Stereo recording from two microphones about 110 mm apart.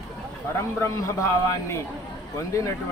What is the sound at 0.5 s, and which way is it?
A man's voice, 25° left (ahead or behind).